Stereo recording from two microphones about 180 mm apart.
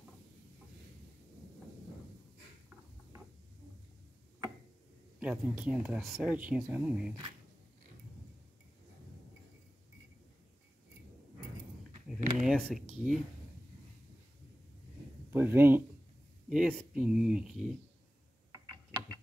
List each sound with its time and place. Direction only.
5.2 s speech: 5° right (ahead or behind)
12.4 s speech: centre (ahead or behind)
15.3 s speech: 10° right (ahead or behind)
18.9 s typing: 25° right (ahead or behind)